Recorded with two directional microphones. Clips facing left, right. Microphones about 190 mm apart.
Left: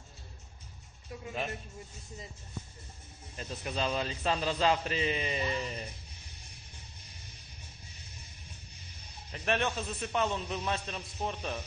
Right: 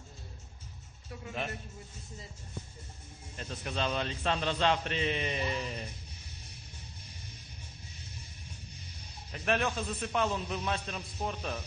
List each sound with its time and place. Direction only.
3.3 s a man's voice: 5° left (ahead or behind)
9.3 s a man's voice: centre (ahead or behind)